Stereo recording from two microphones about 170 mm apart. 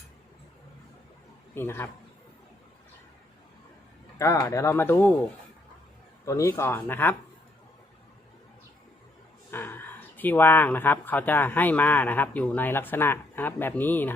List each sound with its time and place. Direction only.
1.5 s speech: 15° left (ahead or behind)
4.2 s speech: 15° left (ahead or behind)
6.2 s speech: 20° left (ahead or behind)
9.5 s speech: 15° left (ahead or behind)